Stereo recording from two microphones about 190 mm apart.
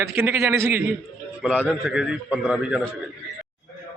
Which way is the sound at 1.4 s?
5° left (ahead or behind).